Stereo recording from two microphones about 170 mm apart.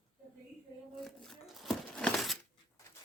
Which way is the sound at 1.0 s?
Centre (ahead or behind).